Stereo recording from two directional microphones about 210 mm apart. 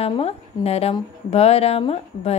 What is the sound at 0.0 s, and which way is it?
A woman's voice, 30° left (ahead or behind).